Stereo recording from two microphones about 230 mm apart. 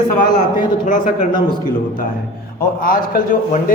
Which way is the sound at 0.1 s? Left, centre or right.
Left.